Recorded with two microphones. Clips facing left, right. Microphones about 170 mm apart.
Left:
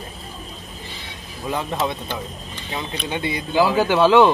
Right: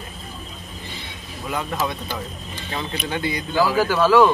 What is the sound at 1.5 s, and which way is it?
Speech, 25° left (ahead or behind).